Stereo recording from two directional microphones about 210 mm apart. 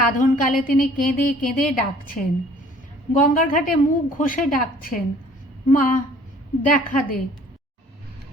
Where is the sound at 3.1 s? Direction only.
40° left (ahead or behind).